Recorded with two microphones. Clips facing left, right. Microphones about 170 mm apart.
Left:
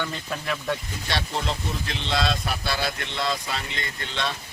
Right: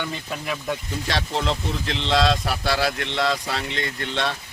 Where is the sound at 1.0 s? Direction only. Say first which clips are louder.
Right 4 dB; 90° right.